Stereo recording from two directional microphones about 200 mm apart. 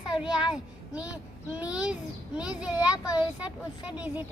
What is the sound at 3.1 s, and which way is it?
A child's voice, 5° right (ahead or behind).